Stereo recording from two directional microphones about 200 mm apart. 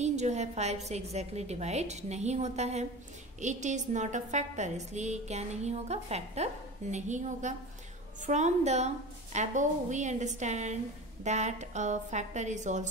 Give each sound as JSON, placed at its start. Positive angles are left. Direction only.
{"t": 0.0, "sound": "a woman's voice", "side_deg": -35}